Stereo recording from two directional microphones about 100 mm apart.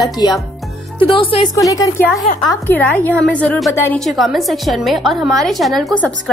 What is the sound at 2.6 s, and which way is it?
A woman's voice, 20° left (ahead or behind).